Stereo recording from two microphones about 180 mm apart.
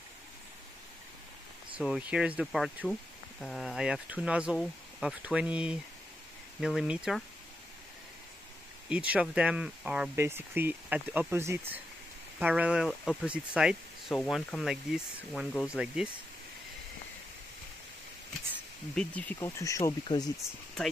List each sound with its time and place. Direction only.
1.8 s speech: 5° right (ahead or behind)
8.8 s speech: 5° right (ahead or behind)
18.9 s speech: 10° left (ahead or behind)